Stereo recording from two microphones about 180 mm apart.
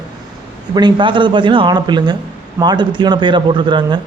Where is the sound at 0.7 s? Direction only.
25° right (ahead or behind).